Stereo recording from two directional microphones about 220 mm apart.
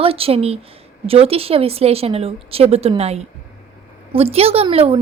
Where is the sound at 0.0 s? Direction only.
25° right (ahead or behind).